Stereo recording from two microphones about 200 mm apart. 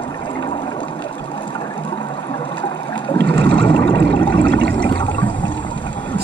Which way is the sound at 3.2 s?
5° left (ahead or behind).